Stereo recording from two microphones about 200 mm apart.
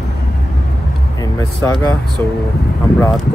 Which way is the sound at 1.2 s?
15° left (ahead or behind).